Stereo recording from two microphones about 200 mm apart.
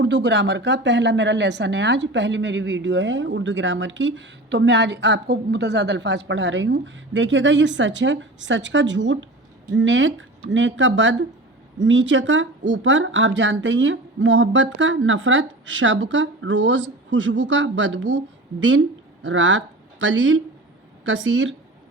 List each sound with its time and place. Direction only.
0.0 s speech: 60° right (ahead or behind)
19.2 s speech: 75° right (ahead or behind)